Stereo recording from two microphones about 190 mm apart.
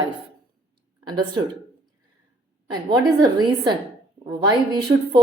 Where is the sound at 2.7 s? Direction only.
20° right (ahead or behind).